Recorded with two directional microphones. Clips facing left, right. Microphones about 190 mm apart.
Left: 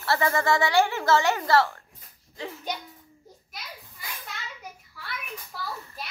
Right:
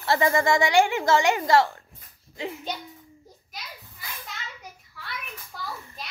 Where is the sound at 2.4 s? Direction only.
15° right (ahead or behind).